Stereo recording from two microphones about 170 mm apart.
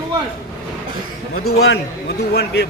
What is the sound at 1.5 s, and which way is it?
A man's voice, 80° left.